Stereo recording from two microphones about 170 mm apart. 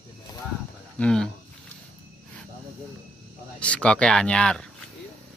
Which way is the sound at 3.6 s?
5° left (ahead or behind).